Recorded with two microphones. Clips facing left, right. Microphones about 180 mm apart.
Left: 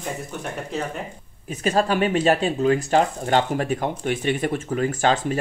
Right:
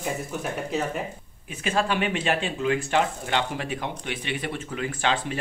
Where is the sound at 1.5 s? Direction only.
40° left (ahead or behind).